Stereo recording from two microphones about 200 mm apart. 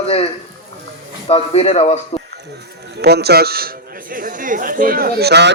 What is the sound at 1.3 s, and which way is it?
Speech, 30° left (ahead or behind).